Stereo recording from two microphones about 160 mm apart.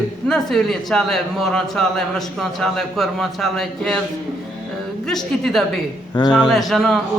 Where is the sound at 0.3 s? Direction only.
Centre (ahead or behind).